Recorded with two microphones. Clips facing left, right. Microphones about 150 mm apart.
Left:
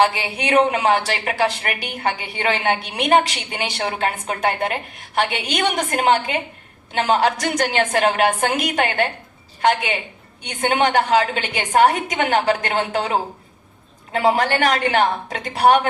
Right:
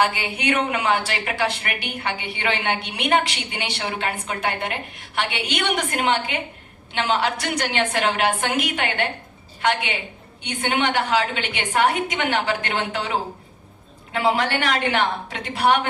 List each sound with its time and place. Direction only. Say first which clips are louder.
0.0 s a woman's voice: left 3 dB; 35° left (ahead or behind)